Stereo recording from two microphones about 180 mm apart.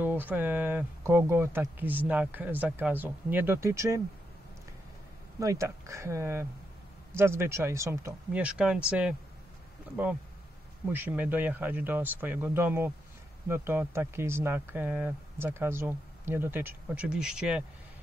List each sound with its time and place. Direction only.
0.0 s speech: 10° right (ahead or behind)
5.4 s speech: 15° right (ahead or behind)
10.9 s speech: 10° right (ahead or behind)